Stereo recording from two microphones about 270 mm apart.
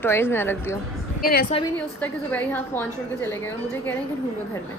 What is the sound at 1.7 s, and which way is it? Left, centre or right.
A woman's voice, centre.